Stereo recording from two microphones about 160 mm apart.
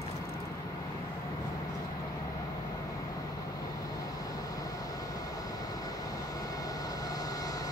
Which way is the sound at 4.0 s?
20° left (ahead or behind).